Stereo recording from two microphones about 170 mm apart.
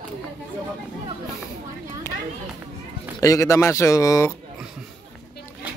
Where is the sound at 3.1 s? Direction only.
20° left (ahead or behind).